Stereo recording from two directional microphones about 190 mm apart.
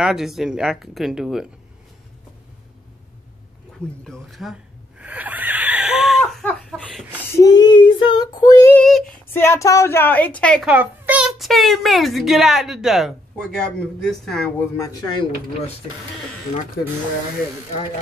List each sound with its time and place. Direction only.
0.0 s a child's voice: centre (ahead or behind)
4.0 s a sound: centre (ahead or behind)
7.3 s female singing: 20° left (ahead or behind)
8.8 s a child's voice: centre (ahead or behind)
9.3 s a woman's voice: 10° left (ahead or behind)
10.7 s a child's voice: 10° right (ahead or behind)
14.8 s speech: 20° left (ahead or behind)